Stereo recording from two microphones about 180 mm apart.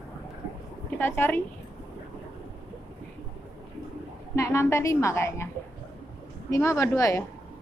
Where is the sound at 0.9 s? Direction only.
10° left (ahead or behind).